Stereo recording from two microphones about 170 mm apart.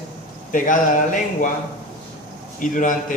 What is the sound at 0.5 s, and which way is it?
Speech, 50° left (ahead or behind).